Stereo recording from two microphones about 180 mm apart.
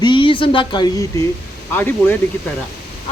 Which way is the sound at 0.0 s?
25° left (ahead or behind).